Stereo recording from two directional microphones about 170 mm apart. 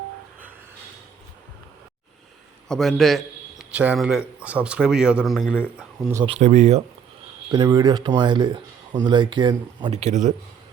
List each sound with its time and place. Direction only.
2.6 s a man's voice: centre (ahead or behind)
6.2 s speech: 40° right (ahead or behind)
7.5 s speech: 25° right (ahead or behind)
9.9 s a man's voice: 40° right (ahead or behind)